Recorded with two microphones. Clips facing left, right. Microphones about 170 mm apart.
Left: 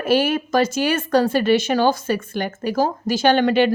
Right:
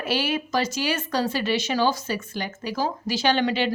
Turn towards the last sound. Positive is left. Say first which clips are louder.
# left 6 dB
turn(degrees=55)  # may be behind; listen again after turning